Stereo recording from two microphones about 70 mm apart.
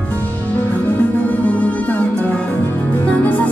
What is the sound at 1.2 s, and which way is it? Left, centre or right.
Music, left.